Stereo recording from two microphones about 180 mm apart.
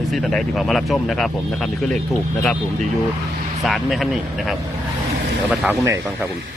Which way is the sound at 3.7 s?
Centre (ahead or behind).